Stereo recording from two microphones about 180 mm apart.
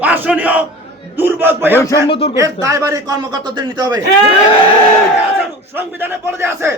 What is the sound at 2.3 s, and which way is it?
A man's voice, 20° right (ahead or behind).